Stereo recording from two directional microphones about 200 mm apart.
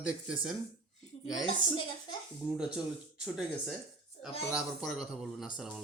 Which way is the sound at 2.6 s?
5° right (ahead or behind).